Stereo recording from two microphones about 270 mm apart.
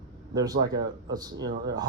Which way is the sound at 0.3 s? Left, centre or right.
Centre.